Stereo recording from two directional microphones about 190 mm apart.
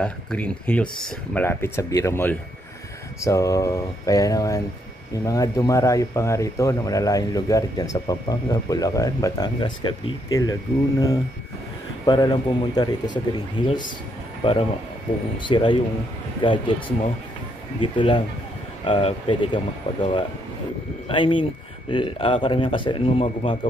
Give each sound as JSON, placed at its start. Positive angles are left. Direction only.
{"t": 0.0, "sound": "speech", "side_deg": 5}
{"t": 21.1, "sound": "speech", "side_deg": 25}